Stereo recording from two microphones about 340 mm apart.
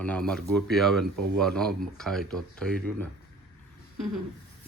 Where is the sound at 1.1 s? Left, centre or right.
Right.